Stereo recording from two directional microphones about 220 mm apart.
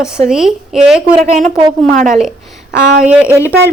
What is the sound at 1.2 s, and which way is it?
Speech, 30° right (ahead or behind).